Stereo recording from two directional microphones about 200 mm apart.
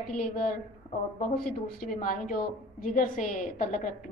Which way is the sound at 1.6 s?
45° left (ahead or behind).